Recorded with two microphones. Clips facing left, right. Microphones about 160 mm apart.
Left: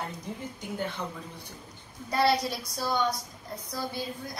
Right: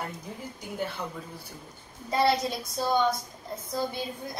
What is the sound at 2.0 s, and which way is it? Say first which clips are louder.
A woman's voice: right 1 dB; 20° right (ahead or behind).